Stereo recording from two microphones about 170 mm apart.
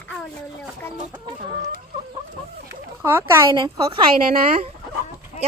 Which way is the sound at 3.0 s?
15° right (ahead or behind).